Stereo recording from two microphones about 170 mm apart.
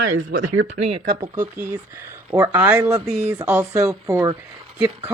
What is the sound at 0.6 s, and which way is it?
Speech, 35° right (ahead or behind).